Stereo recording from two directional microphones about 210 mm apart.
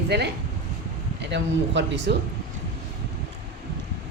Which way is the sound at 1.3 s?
55° right (ahead or behind).